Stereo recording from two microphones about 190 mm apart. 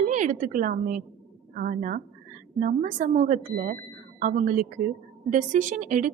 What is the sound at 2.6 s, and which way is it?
A woman's voice, 40° right (ahead or behind).